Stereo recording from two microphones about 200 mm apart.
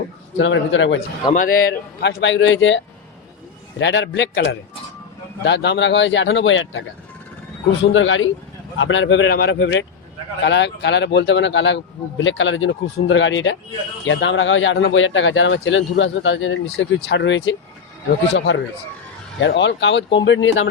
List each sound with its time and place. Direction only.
0.3 s a man's voice: 70° left (ahead or behind)
1.3 s a man's voice: 45° left (ahead or behind); by 6.8 s 75° left (ahead or behind)
7.9 s a man's voice: 75° left (ahead or behind)